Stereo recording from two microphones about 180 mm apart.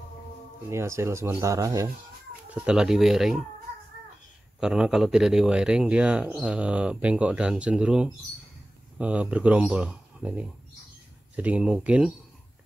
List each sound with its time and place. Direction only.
0.7 s speech: 15° right (ahead or behind)
2.5 s speech: 5° right (ahead or behind)
4.6 s speech: 5° right (ahead or behind)